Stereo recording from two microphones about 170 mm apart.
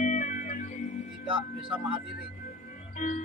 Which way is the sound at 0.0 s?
45° left (ahead or behind).